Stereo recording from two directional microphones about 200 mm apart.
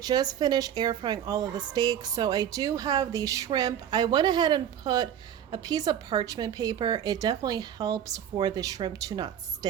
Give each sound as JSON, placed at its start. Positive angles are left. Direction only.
{"t": 0.0, "sound": "a woman's voice", "side_deg": -20}